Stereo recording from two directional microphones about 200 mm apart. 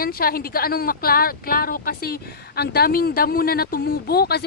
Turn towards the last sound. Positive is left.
turn(degrees=55)  # may be behind; listen again after turning